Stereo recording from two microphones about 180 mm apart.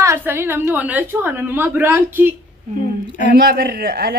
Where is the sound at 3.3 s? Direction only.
60° right (ahead or behind).